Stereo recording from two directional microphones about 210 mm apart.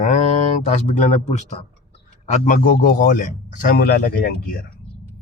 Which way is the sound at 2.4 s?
40° left (ahead or behind).